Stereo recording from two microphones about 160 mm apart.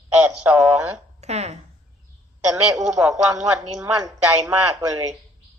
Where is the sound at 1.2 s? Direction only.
45° right (ahead or behind).